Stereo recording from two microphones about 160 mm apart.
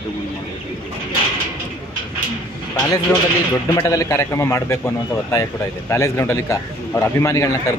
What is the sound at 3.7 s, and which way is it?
A man's voice, 20° left (ahead or behind).